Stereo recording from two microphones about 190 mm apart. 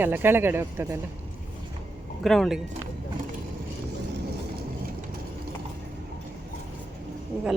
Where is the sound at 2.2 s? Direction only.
Centre (ahead or behind).